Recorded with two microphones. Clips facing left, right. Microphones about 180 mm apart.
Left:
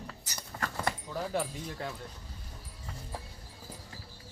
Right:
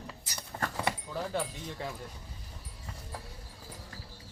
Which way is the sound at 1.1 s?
5° left (ahead or behind).